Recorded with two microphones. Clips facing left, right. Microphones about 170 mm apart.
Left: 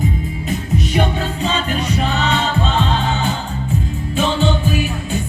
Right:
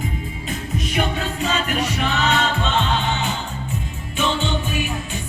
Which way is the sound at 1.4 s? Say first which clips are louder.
Even; 30° left (ahead or behind).